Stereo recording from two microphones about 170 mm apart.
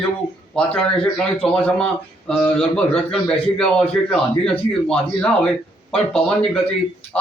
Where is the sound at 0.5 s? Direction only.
5° left (ahead or behind).